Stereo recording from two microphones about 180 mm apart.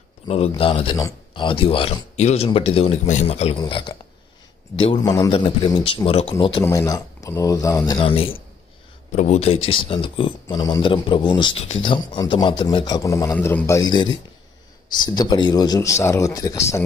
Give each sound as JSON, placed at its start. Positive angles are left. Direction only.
{"t": 0.3, "sound": "speech", "side_deg": 30}
{"t": 8.0, "sound": "speech", "side_deg": 30}